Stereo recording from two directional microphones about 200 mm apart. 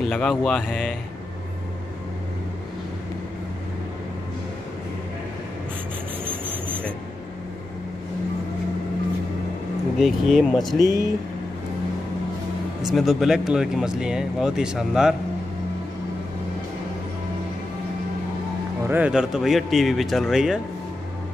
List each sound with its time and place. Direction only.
0.0 s speech: 5° left (ahead or behind)
9.9 s speech: centre (ahead or behind)
10.8 s speech: 20° left (ahead or behind)
12.8 s speech: centre (ahead or behind)
18.9 s speech: 5° right (ahead or behind)